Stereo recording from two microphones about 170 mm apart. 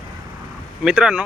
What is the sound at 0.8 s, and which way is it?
Speech, 5° right (ahead or behind).